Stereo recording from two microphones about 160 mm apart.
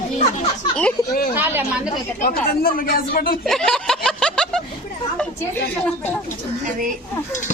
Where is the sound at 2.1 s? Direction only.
65° left (ahead or behind).